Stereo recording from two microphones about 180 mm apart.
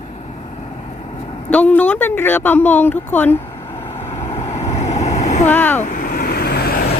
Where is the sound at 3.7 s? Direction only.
35° left (ahead or behind).